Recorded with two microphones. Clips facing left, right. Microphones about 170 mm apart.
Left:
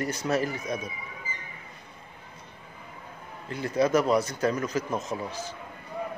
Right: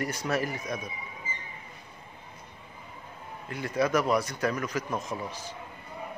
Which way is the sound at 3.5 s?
25° left (ahead or behind).